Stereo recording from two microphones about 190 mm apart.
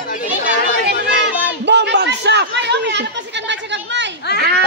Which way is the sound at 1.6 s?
65° right (ahead or behind).